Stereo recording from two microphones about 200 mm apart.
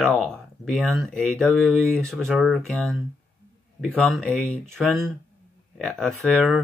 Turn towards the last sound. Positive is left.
turn(degrees=0)  # may be behind; listen again after turning